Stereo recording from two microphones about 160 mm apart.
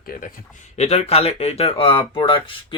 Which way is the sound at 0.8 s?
40° left (ahead or behind).